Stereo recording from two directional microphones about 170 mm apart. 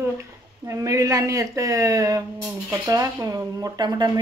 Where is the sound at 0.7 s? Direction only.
20° right (ahead or behind).